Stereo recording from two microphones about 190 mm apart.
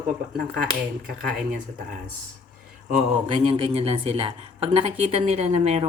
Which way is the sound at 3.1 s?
30° right (ahead or behind).